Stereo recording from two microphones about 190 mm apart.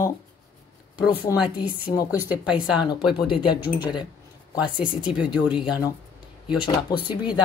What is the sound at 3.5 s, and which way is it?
Speech, 5° right (ahead or behind).